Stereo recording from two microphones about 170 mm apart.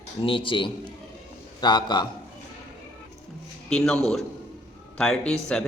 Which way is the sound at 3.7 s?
5° left (ahead or behind).